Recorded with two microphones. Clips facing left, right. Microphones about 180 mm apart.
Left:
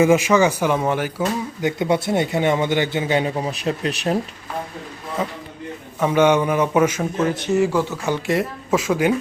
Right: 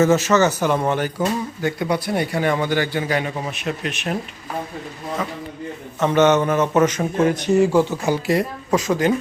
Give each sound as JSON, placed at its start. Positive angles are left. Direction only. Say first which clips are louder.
{"t": 0.0, "sound": "a man's voice", "louder": "left 1 dB", "side_deg": 10}
{"t": 1.6, "sound": "a man's voice", "louder": "left 3 dB", "side_deg": 25}
{"t": 6.0, "sound": "a man's voice", "louder": "even", "side_deg": 10}
{"t": 7.0, "sound": "speech", "louder": "right 3 dB", "side_deg": -10}
{"t": 8.3, "sound": "a man's voice", "louder": "left 1 dB", "side_deg": 5}